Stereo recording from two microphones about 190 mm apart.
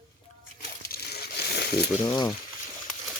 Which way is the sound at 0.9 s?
55° left (ahead or behind).